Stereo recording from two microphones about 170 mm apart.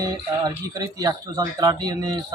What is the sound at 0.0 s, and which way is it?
Speech, 20° right (ahead or behind).